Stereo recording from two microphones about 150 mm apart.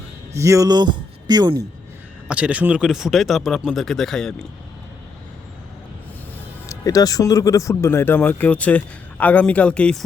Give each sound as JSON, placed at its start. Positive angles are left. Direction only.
{"t": 0.3, "sound": "speech", "side_deg": -20}
{"t": 2.2, "sound": "speech", "side_deg": -10}
{"t": 6.7, "sound": "speech", "side_deg": 25}